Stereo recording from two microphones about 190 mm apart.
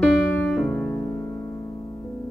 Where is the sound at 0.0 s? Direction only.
Centre (ahead or behind).